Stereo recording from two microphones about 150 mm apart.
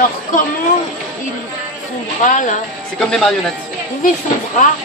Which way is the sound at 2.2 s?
55° left (ahead or behind).